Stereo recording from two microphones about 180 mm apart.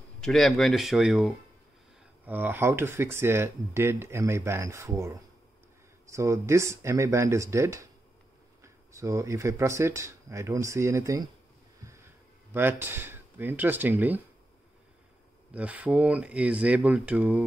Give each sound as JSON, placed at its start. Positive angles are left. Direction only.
{"t": 0.2, "sound": "speech", "side_deg": 0}
{"t": 11.8, "sound": "a sound", "side_deg": -15}
{"t": 12.5, "sound": "speech", "side_deg": -10}
{"t": 15.5, "sound": "speech", "side_deg": -5}